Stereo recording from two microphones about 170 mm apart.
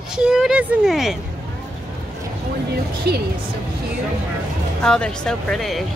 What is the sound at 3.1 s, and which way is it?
Speech, 70° right (ahead or behind).